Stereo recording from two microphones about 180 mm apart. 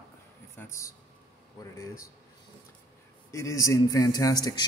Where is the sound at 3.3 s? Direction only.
15° left (ahead or behind).